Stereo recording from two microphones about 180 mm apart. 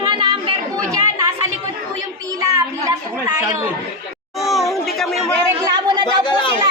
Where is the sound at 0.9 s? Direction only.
20° right (ahead or behind).